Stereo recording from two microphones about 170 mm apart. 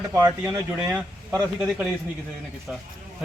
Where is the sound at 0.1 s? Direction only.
15° right (ahead or behind).